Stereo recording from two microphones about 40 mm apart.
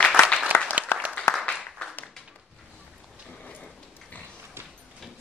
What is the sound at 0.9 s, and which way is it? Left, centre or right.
Applause, left.